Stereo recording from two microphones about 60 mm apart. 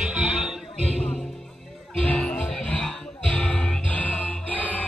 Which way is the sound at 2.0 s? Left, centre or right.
Left.